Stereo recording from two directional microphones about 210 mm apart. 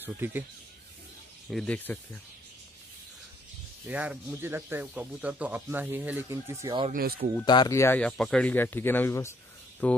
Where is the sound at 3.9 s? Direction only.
5° right (ahead or behind).